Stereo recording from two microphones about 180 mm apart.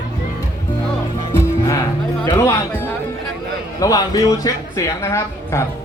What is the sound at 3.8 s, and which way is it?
A woman's voice, 20° left (ahead or behind).